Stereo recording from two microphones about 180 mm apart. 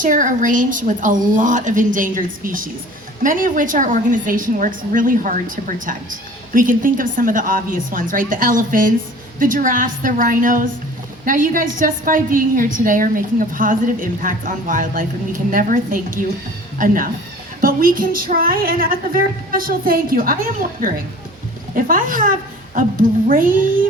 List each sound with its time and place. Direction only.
0.0 s a woman's voice: 45° right (ahead or behind)